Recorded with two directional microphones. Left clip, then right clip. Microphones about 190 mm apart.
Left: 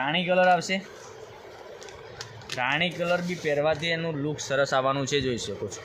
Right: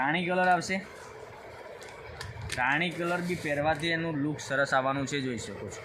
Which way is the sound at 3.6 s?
55° left (ahead or behind).